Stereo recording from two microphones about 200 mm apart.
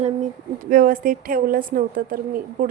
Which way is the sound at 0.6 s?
45° right (ahead or behind).